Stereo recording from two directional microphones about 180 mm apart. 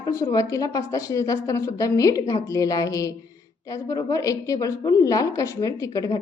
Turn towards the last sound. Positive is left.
turn(degrees=20)  # may be behind; listen again after turning